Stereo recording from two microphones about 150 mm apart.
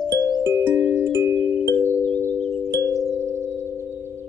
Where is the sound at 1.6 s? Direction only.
15° left (ahead or behind).